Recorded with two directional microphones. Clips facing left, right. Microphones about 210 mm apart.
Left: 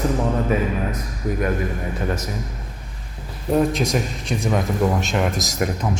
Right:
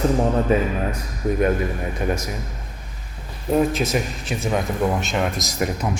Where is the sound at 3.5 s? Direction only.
5° right (ahead or behind).